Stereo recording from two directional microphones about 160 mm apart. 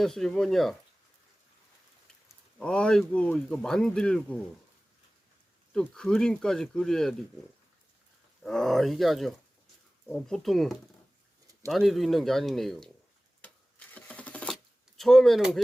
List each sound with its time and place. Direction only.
0.0 s speech: centre (ahead or behind)
2.6 s speech: 5° left (ahead or behind)
5.7 s speech: 5° left (ahead or behind)
8.4 s speech: centre (ahead or behind)
13.4 s a sound: 10° left (ahead or behind)